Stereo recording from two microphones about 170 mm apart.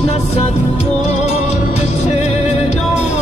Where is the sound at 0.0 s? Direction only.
40° left (ahead or behind).